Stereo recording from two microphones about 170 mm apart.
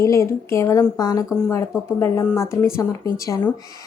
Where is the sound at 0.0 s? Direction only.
15° left (ahead or behind).